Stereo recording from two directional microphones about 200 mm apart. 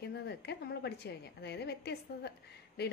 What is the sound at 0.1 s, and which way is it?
A woman's voice, 55° left (ahead or behind).